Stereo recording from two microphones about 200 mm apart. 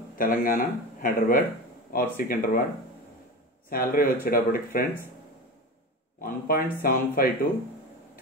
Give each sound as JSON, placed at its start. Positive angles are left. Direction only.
{"t": 0.2, "sound": "speech", "side_deg": 45}
{"t": 3.7, "sound": "speech", "side_deg": 45}
{"t": 6.2, "sound": "speech", "side_deg": 45}